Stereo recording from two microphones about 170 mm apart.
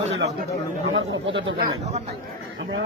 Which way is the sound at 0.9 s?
90° right.